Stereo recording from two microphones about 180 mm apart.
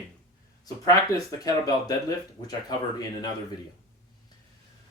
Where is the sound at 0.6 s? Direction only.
20° left (ahead or behind).